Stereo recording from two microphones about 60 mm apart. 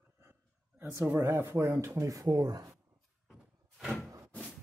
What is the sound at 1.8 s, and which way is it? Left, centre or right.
Speech, right.